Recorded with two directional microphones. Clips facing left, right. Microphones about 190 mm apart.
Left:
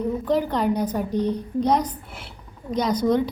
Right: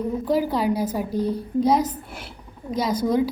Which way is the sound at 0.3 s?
5° right (ahead or behind).